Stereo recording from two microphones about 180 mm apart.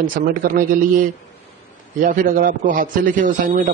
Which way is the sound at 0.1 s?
55° right (ahead or behind).